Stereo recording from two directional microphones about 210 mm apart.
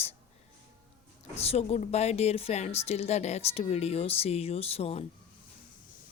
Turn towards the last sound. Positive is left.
turn(degrees=30)  # may be behind; listen again after turning